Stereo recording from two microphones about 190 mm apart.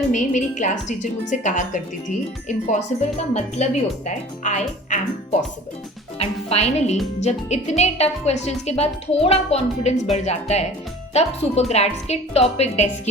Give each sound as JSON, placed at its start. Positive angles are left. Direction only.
{"t": 0.1, "sound": "a woman's voice", "side_deg": 40}
{"t": 6.1, "sound": "a woman's voice", "side_deg": 35}